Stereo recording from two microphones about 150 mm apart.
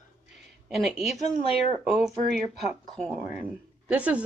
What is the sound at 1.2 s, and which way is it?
Speech, 40° left (ahead or behind).